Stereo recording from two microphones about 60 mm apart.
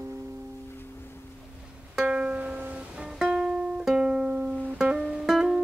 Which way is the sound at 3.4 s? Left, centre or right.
Centre.